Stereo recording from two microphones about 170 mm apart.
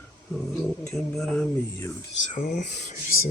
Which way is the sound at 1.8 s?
25° left (ahead or behind).